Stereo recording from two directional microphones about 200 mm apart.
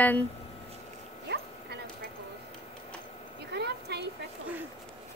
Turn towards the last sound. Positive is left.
turn(degrees=-55)  # may be behind; listen again after turning